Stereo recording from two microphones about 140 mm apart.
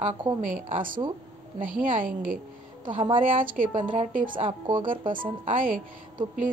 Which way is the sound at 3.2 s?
75° right (ahead or behind).